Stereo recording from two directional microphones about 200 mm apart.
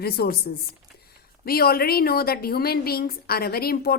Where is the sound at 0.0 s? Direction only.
50° left (ahead or behind).